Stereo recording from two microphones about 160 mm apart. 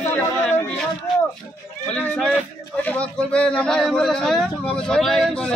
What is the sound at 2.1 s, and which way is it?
Speech, 5° left (ahead or behind).